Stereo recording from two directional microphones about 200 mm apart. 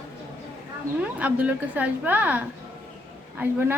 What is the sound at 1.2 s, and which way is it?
A woman's voice, 10° right (ahead or behind).